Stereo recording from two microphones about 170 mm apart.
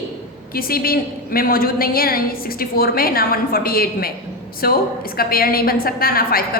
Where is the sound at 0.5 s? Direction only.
60° left (ahead or behind).